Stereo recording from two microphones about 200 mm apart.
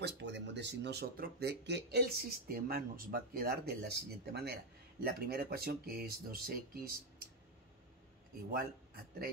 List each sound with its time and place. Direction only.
0.0 s speech: 60° right (ahead or behind)